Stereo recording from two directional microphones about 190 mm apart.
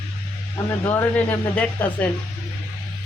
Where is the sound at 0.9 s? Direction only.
10° left (ahead or behind).